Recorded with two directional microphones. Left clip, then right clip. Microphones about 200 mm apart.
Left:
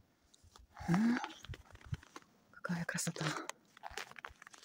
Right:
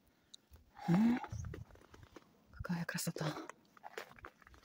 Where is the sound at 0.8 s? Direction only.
10° right (ahead or behind).